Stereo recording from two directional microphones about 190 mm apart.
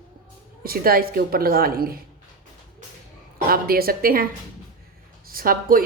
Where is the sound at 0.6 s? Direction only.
50° right (ahead or behind).